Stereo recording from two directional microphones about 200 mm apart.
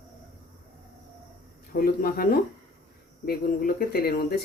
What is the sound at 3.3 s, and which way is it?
Speech, 50° left (ahead or behind).